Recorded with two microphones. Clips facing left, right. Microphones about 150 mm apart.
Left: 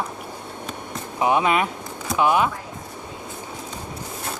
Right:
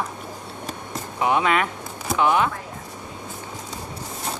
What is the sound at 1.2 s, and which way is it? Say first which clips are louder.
Speech: left 1 dB; 20° left (ahead or behind).